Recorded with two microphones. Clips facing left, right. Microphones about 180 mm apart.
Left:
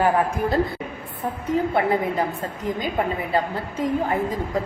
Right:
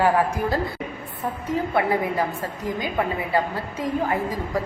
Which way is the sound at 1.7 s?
20° left (ahead or behind).